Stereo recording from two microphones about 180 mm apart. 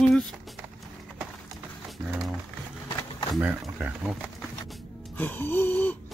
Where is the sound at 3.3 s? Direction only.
10° right (ahead or behind).